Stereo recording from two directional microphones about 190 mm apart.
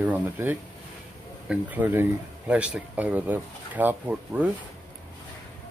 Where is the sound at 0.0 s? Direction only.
10° right (ahead or behind).